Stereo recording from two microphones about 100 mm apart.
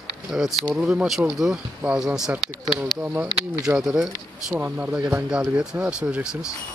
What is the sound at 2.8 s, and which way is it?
Speech, 20° right (ahead or behind).